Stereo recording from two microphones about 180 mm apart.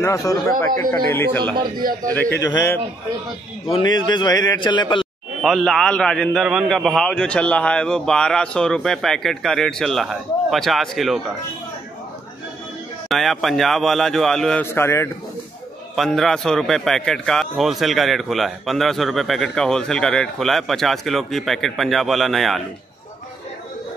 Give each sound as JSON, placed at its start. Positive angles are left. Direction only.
{"t": 0.0, "sound": "a man's voice", "side_deg": 15}
{"t": 1.4, "sound": "a man's voice", "side_deg": -25}
{"t": 2.4, "sound": "a man's voice", "side_deg": 15}
{"t": 5.4, "sound": "a man's voice", "side_deg": 5}
{"t": 13.1, "sound": "a man's voice", "side_deg": 0}
{"t": 16.0, "sound": "a man's voice", "side_deg": 0}